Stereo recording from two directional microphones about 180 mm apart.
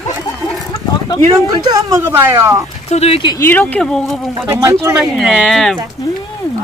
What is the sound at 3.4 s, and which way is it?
Speech, 10° left (ahead or behind).